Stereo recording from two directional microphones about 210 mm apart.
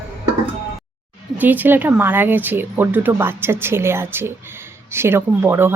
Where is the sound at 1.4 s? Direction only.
10° right (ahead or behind).